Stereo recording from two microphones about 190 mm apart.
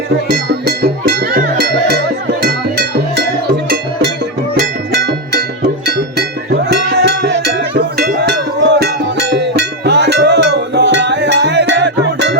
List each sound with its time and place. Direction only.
0.3 s music: 55° right (ahead or behind)
5.8 s cowbell: 60° right (ahead or behind)
7.8 s music: 60° right (ahead or behind)
9.3 s cowbell: 65° right (ahead or behind)